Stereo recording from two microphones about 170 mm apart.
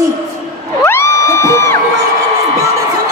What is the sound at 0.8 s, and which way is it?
Music, 15° left (ahead or behind).